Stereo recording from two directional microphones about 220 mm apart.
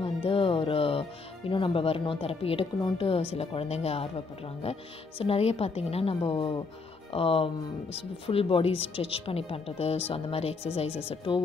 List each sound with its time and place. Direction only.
0.0 s music: 25° left (ahead or behind)
1.5 s speech: 25° left (ahead or behind)
5.2 s speech: 25° left (ahead or behind)